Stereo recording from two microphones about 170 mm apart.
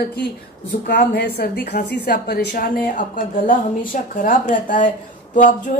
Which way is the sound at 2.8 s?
55° left (ahead or behind).